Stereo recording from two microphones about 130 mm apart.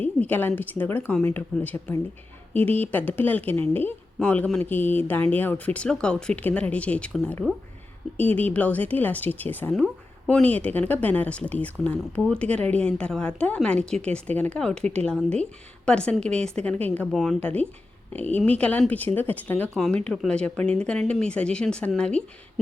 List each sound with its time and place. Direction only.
0.0 s a woman's voice: 15° left (ahead or behind)
17.1 s speech: centre (ahead or behind)
17.4 s speech: 10° left (ahead or behind)
19.7 s speech: centre (ahead or behind)